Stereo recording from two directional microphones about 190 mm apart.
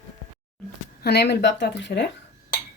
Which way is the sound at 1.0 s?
60° left (ahead or behind).